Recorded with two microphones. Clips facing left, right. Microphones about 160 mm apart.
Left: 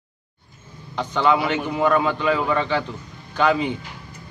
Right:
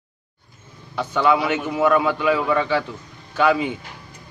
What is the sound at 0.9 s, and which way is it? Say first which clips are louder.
A man's voice: right 1 dB; 10° right (ahead or behind).